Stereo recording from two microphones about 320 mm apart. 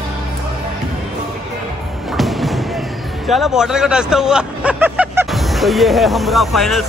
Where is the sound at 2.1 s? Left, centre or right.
Centre.